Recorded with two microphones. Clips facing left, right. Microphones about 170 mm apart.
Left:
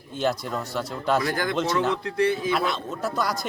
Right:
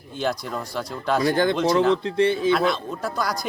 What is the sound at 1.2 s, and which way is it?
Speech, 30° right (ahead or behind).